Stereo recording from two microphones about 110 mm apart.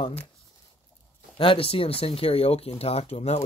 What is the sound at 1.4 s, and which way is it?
Speech, 55° left (ahead or behind).